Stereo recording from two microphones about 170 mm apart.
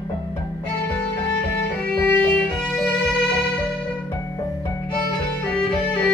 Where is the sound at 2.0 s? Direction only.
5° left (ahead or behind).